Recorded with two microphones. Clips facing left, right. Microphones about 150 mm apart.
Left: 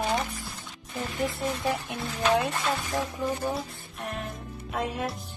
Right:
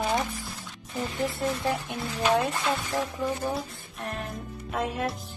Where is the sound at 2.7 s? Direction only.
15° left (ahead or behind).